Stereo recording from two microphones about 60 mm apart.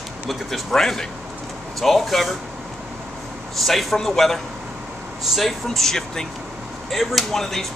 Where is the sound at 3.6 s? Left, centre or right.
Centre.